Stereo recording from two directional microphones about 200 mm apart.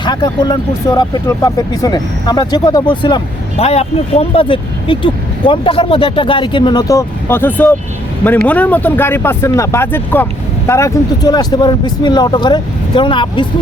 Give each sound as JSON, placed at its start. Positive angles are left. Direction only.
{"t": 0.0, "sound": "speech", "side_deg": 20}